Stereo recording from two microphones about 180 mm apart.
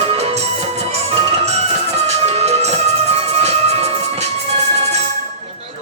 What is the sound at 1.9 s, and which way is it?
Music, 35° right (ahead or behind).